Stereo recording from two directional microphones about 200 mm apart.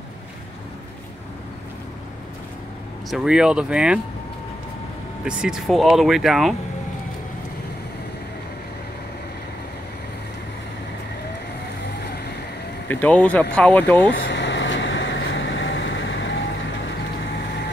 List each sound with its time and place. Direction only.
3.1 s speech: 5° right (ahead or behind)
5.2 s speech: 5° right (ahead or behind)
12.8 s speech: 10° left (ahead or behind)
14.1 s vehicle: 60° left (ahead or behind)